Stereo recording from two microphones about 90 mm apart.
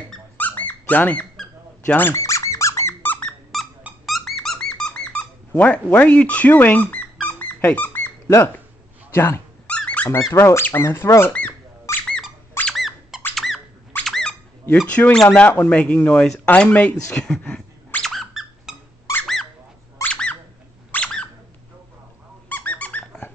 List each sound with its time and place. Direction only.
0.4 s dog: 20° left (ahead or behind)
2.0 s speech: 25° left (ahead or behind)
2.2 s squeak: 35° left (ahead or behind)
3.2 s squeak: 10° left (ahead or behind); by 8.5 s 25° left (ahead or behind)
9.1 s speech: 30° left (ahead or behind)
9.7 s squeak: 15° left (ahead or behind)
10.0 s speech: 30° left (ahead or behind)
12.6 s squeak: centre (ahead or behind)
14.9 s speech: 15° left (ahead or behind)
17.1 s a sound: 10° left (ahead or behind)
18.1 s squeak: centre (ahead or behind)
20.1 s a sound: 10° left (ahead or behind)
22.5 s squeak: 20° left (ahead or behind)